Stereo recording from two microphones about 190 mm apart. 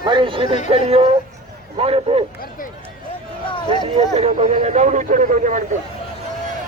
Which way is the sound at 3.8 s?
30° right (ahead or behind).